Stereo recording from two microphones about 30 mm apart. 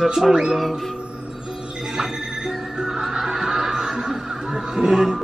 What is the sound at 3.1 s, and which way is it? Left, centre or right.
Snicker, centre.